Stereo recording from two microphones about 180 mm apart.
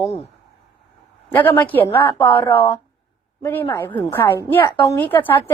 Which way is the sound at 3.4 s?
10° left (ahead or behind).